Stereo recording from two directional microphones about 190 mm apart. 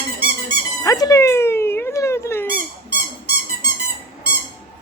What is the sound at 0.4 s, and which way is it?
Squeak, 20° left (ahead or behind).